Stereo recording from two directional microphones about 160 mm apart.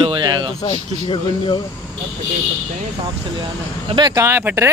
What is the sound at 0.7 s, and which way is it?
Speech, 30° left (ahead or behind).